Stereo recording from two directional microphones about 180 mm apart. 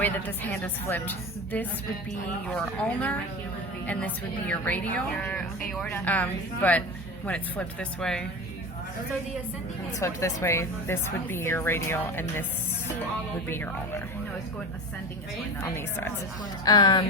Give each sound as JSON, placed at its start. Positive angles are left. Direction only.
{"t": 0.0, "sound": "a woman's voice", "side_deg": 10}
{"t": 2.5, "sound": "a woman's voice", "side_deg": 5}
{"t": 10.0, "sound": "a woman's voice", "side_deg": 15}
{"t": 13.5, "sound": "a woman's voice", "side_deg": 10}
{"t": 15.7, "sound": "a woman's voice", "side_deg": 10}